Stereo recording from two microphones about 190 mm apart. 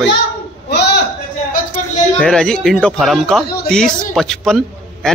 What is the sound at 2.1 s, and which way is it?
Speech, 5° left (ahead or behind).